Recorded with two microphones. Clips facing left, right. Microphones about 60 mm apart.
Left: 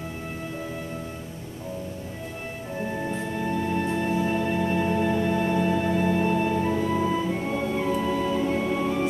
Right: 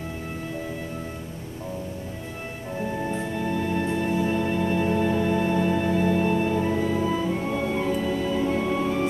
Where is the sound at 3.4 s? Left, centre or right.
Centre.